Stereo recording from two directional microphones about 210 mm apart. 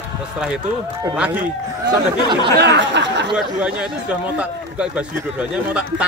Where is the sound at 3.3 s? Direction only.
5° right (ahead or behind).